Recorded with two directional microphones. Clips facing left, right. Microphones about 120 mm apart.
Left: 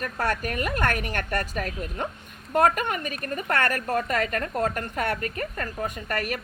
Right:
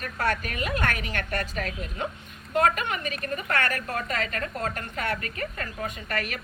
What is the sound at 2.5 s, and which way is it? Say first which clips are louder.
A woman's voice: left 2 dB; 45° left (ahead or behind).